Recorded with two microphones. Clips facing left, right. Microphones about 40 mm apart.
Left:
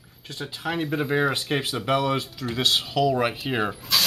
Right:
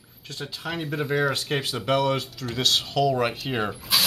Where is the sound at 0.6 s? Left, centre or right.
Centre.